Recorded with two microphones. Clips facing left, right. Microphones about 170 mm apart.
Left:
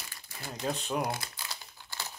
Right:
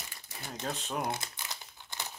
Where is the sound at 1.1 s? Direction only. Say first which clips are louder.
Even; 20° right (ahead or behind).